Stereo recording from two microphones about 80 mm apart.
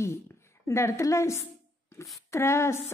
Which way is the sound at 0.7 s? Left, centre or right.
Left.